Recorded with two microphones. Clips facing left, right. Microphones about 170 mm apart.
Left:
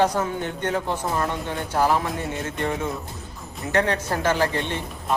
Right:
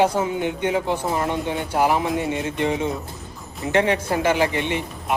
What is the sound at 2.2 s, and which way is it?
Music, 15° right (ahead or behind).